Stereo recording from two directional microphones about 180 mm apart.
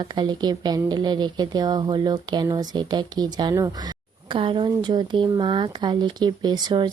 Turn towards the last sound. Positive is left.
turn(degrees=-25)  # may be behind; listen again after turning